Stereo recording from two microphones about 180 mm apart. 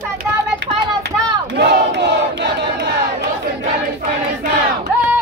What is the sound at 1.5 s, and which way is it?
Battle cry, 65° right (ahead or behind).